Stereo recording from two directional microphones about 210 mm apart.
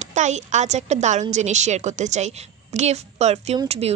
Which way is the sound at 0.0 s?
35° right (ahead or behind).